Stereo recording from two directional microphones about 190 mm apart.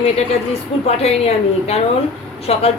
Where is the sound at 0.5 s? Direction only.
35° left (ahead or behind).